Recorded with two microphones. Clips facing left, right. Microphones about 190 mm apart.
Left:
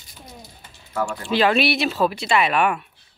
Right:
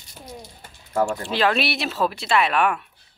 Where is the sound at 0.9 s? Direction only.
30° right (ahead or behind).